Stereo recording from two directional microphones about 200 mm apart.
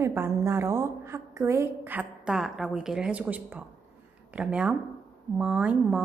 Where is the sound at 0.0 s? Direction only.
15° right (ahead or behind).